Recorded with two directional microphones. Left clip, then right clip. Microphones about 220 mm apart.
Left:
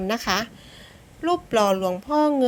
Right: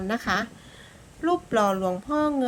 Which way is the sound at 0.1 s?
20° left (ahead or behind).